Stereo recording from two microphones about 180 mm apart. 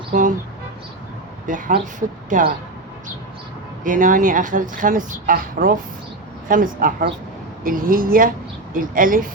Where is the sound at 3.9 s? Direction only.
45° right (ahead or behind).